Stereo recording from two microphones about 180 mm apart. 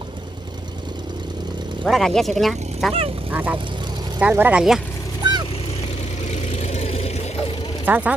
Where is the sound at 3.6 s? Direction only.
25° right (ahead or behind).